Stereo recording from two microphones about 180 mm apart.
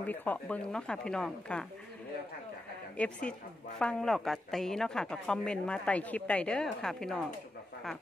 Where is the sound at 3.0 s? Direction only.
5° left (ahead or behind).